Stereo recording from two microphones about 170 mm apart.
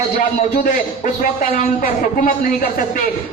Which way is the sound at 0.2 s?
50° left (ahead or behind).